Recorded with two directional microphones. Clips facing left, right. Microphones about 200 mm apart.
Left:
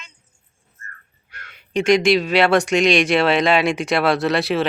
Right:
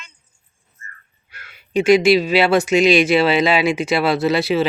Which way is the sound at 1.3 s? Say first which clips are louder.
Right 3 dB; 5° right (ahead or behind).